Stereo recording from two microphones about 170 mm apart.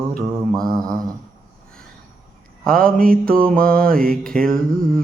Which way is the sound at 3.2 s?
60° right (ahead or behind).